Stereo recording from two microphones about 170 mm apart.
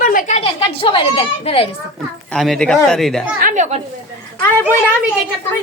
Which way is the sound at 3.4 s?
45° right (ahead or behind).